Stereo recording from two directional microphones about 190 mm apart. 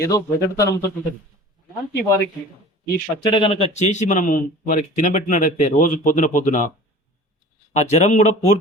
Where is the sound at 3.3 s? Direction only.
30° left (ahead or behind).